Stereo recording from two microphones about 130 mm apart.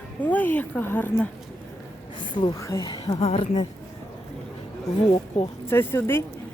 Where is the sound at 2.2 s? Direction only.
40° left (ahead or behind).